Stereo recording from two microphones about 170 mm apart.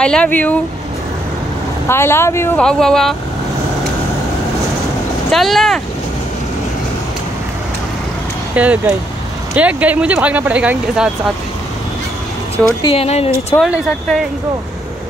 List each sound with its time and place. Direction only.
0.0 s speech: 5° left (ahead or behind)
1.9 s speech: 15° left (ahead or behind)
5.3 s speech: centre (ahead or behind)
8.5 s speech: 10° right (ahead or behind)
12.8 s speech: 35° left (ahead or behind)
13.6 s speech: centre (ahead or behind)